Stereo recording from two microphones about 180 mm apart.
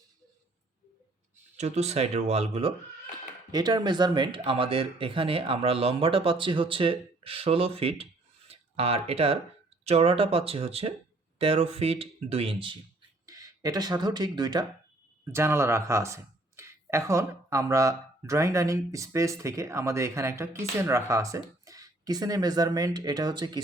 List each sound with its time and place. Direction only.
1.5 s speech: 40° right (ahead or behind)
3.5 s speech: 20° right (ahead or behind)
13.2 s speech: 20° right (ahead or behind)